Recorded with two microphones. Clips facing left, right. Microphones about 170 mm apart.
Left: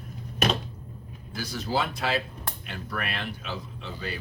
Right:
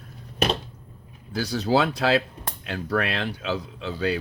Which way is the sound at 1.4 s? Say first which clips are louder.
Right 7 dB; 75° right (ahead or behind).